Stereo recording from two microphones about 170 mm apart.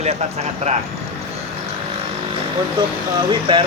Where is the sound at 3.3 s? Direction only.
30° right (ahead or behind).